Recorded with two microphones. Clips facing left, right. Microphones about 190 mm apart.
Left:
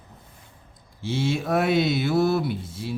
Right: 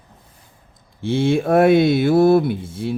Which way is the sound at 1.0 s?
55° right (ahead or behind).